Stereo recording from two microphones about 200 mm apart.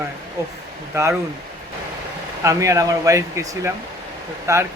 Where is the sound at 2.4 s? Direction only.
15° right (ahead or behind).